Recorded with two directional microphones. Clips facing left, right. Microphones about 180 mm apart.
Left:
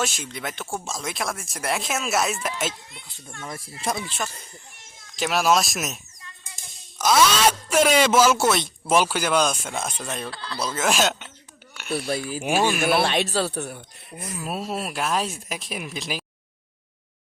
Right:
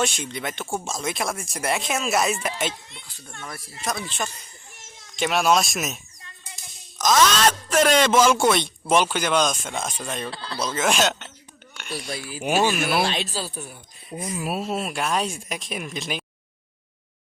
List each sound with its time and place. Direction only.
0.0 s speech: centre (ahead or behind)
3.4 s speech: 25° left (ahead or behind)
5.1 s speech: centre (ahead or behind)
7.0 s speech: 10° left (ahead or behind)
10.3 s speech: 25° right (ahead or behind)
10.6 s speech: 5° left (ahead or behind)
13.1 s speech: 60° left (ahead or behind)
14.3 s speech: 10° right (ahead or behind)
14.6 s speech: centre (ahead or behind)